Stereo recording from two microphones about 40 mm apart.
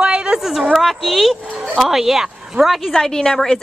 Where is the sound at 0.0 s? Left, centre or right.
Right.